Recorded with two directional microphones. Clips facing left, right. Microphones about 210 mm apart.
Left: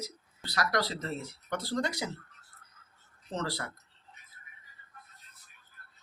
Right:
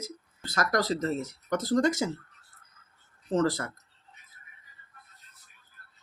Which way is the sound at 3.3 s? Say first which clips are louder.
Right 9 dB; 45° right (ahead or behind).